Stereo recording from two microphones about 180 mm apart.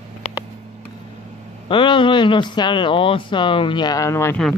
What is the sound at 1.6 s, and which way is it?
Speech, 25° left (ahead or behind).